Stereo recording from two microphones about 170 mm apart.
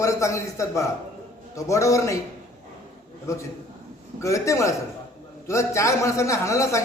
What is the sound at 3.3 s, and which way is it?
A man's voice, 15° left (ahead or behind).